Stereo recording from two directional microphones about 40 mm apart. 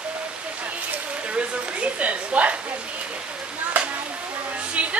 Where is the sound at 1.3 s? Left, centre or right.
Right.